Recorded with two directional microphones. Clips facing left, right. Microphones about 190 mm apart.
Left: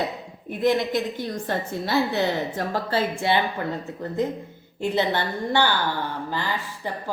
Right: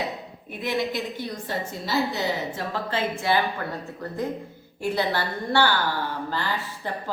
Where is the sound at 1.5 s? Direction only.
60° left (ahead or behind).